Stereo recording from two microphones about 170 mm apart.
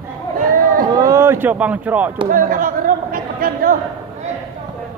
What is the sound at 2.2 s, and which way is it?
Chatter, 55° right (ahead or behind).